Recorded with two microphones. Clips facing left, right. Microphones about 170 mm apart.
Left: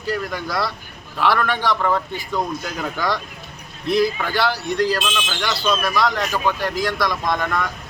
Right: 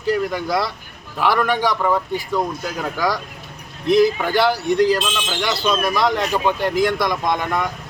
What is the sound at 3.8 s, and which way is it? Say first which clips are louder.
Speech: right 4 dB; 20° right (ahead or behind).